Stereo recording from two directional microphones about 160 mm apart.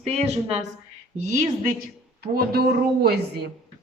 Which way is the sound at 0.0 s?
40° right (ahead or behind).